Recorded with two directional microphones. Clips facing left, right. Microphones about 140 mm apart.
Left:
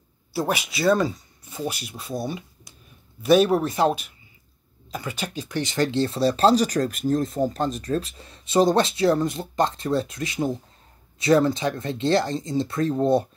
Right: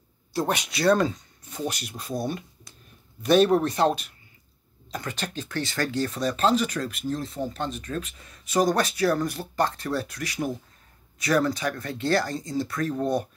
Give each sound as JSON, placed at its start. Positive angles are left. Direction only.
{"t": 0.3, "sound": "speech", "side_deg": 5}